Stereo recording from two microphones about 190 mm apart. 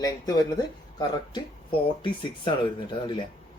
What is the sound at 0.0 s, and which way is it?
A man's voice, 20° left (ahead or behind).